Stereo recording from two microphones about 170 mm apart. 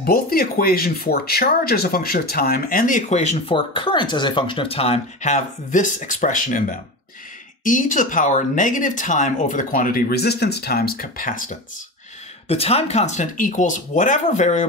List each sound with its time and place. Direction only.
0.0 s speech: 60° left (ahead or behind)
12.4 s speech: 35° left (ahead or behind)